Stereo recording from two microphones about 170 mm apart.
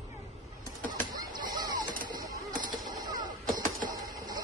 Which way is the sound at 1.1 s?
25° right (ahead or behind).